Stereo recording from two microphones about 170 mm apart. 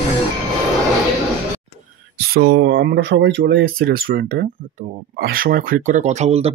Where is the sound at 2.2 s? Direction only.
70° right (ahead or behind).